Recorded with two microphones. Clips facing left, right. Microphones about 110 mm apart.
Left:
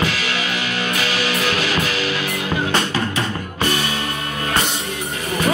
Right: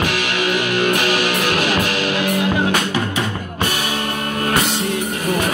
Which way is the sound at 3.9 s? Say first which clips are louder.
Right 3 dB; 50° right (ahead or behind).